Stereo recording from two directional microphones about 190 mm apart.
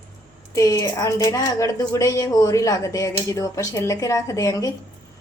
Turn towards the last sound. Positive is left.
turn(degrees=20)  # may be behind; listen again after turning